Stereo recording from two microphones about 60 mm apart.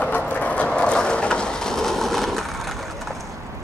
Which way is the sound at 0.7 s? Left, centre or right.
Centre.